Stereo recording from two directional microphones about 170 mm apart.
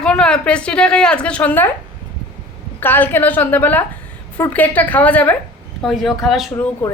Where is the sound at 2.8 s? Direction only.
10° left (ahead or behind).